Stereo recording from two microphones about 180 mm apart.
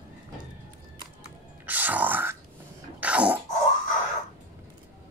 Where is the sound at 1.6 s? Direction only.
10° right (ahead or behind).